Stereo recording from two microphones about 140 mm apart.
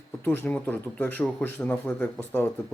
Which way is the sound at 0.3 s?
15° left (ahead or behind).